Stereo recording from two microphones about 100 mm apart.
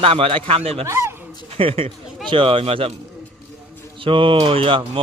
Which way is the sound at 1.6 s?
70° right (ahead or behind).